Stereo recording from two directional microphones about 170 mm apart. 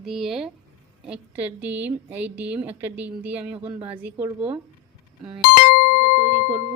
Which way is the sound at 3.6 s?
30° right (ahead or behind).